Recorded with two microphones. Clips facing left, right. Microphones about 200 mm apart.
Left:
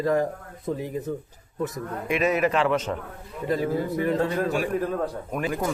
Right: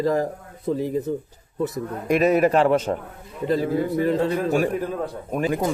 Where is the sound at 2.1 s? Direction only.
40° right (ahead or behind).